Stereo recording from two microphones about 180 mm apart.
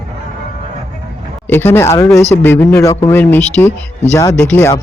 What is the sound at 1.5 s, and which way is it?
Speech, 10° left (ahead or behind).